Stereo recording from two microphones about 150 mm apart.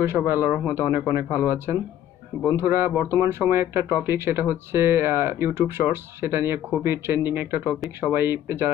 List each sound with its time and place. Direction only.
0.0 s speech: 15° right (ahead or behind)